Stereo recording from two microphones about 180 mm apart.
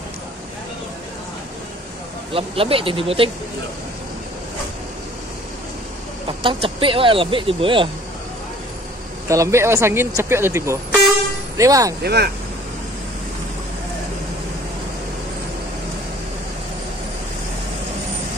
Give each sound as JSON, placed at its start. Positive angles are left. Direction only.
{"t": 2.3, "sound": "speech", "side_deg": -30}
{"t": 6.2, "sound": "speech", "side_deg": -30}
{"t": 9.3, "sound": "speech", "side_deg": -15}
{"t": 12.0, "sound": "speech", "side_deg": -65}